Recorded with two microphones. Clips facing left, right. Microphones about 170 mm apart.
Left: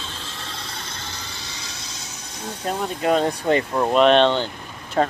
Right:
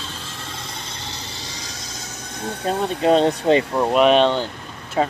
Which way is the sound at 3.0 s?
25° right (ahead or behind).